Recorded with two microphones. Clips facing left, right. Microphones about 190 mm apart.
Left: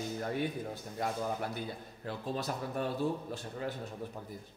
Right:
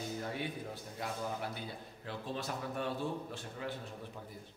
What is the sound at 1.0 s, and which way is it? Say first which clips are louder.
A man's voice: left 4 dB; 45° left (ahead or behind).